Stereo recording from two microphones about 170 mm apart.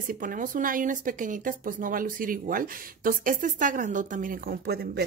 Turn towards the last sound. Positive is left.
turn(degrees=-65)  # may be behind; listen again after turning